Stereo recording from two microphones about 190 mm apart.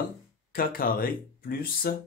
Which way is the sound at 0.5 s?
50° left (ahead or behind).